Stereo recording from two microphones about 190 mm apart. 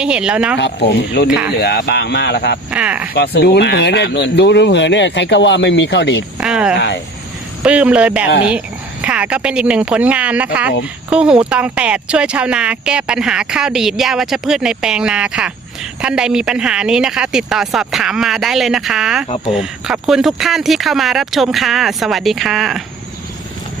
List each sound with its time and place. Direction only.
0.0 s speech: 5° right (ahead or behind)
0.6 s speech: 60° left (ahead or behind)
1.3 s speech: 5° right (ahead or behind)
1.5 s speech: 60° left (ahead or behind)
2.6 s speech: 5° right (ahead or behind)
3.2 s speech: 60° left (ahead or behind)
6.4 s a sound: 5° right (ahead or behind)
6.7 s speech: 65° left (ahead or behind)
7.6 s speech: 5° right (ahead or behind)